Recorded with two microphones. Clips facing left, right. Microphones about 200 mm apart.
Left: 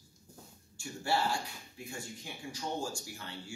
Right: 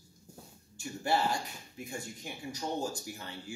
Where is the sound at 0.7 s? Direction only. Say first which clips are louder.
Right 2 dB; 20° right (ahead or behind).